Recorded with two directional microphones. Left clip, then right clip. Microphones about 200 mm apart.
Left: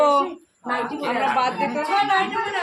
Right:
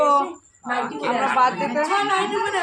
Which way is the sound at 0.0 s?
20° left (ahead or behind).